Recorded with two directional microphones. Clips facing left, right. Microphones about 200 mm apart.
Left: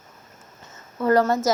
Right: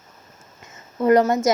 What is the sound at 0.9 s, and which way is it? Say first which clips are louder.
Speech: right 3 dB; 20° right (ahead or behind).